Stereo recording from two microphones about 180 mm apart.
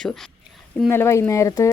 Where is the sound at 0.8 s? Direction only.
15° left (ahead or behind).